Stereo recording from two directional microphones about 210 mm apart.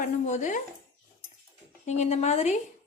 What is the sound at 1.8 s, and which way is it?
Speech, 30° left (ahead or behind).